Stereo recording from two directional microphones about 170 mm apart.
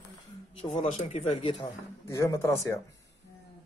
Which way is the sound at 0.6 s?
30° left (ahead or behind).